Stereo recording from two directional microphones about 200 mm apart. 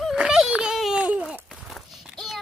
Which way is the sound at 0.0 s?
Centre (ahead or behind).